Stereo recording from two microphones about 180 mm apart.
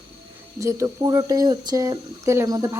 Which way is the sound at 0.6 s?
15° right (ahead or behind).